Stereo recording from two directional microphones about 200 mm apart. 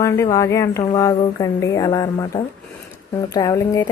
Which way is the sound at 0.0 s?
15° left (ahead or behind).